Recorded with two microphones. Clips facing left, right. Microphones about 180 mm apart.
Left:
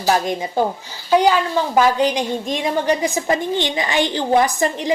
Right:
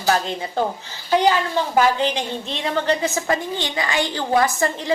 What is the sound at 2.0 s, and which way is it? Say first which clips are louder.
A woman's voice: left 4 dB; 15° left (ahead or behind).